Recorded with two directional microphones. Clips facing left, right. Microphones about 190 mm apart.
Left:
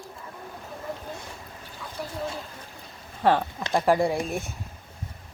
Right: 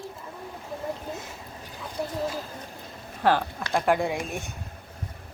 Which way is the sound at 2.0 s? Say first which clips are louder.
Right 4 dB; 20° right (ahead or behind).